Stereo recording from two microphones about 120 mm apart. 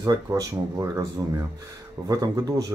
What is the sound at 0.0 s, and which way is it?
Speech, 30° right (ahead or behind).